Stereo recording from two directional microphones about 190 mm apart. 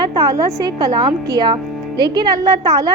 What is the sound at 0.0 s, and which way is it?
A woman's voice, 20° right (ahead or behind).